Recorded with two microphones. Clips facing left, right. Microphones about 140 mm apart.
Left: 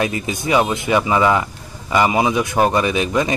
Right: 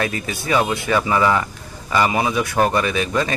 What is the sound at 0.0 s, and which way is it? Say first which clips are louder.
A man's voice: left 3 dB; 20° left (ahead or behind).